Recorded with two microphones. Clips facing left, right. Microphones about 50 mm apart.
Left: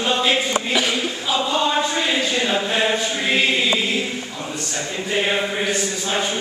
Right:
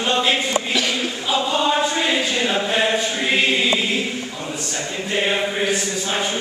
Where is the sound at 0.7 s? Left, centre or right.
Centre.